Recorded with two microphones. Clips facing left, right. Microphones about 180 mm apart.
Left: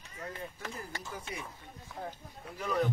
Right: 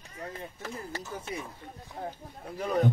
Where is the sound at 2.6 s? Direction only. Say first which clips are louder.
Right 3 dB; 40° right (ahead or behind).